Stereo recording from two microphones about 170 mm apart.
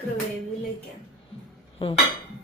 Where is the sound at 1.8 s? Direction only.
30° left (ahead or behind).